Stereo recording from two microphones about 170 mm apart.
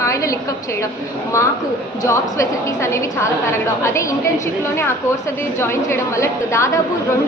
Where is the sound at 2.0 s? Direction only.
15° left (ahead or behind).